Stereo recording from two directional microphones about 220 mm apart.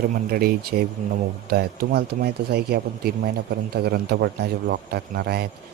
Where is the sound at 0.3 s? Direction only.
45° right (ahead or behind).